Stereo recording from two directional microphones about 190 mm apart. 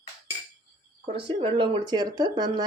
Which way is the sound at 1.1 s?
30° right (ahead or behind).